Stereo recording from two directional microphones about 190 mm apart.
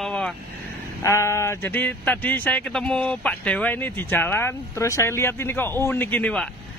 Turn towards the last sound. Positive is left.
turn(degrees=5)  # may be behind; listen again after turning